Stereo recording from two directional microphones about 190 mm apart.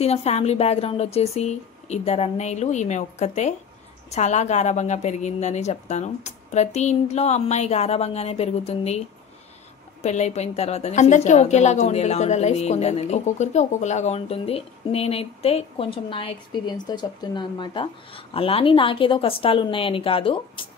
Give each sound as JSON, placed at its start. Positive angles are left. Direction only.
{"t": 0.0, "sound": "a woman's voice", "side_deg": 35}
{"t": 10.0, "sound": "a woman's voice", "side_deg": 35}